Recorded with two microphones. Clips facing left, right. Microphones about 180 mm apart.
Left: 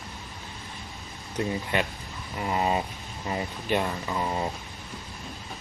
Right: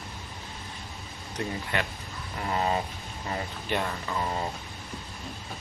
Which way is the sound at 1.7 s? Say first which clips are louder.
Left 3 dB; 15° left (ahead or behind).